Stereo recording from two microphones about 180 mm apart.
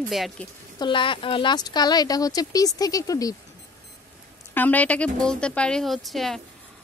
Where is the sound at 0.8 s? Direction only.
25° left (ahead or behind).